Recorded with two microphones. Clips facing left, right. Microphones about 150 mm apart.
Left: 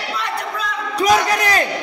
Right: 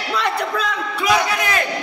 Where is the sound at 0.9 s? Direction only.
40° left (ahead or behind).